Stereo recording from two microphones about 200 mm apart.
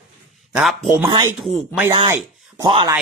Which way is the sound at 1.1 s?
20° right (ahead or behind).